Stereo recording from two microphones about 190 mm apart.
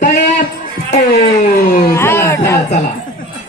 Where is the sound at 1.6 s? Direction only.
50° left (ahead or behind).